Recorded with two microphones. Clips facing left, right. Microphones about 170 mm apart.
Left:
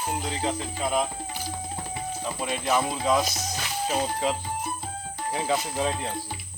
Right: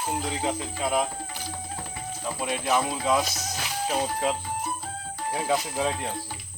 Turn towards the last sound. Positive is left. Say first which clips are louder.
# even
turn(degrees=0)  # may be behind; listen again after turning